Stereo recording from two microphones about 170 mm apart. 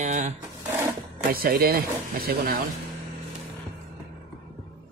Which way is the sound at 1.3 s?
60° right (ahead or behind).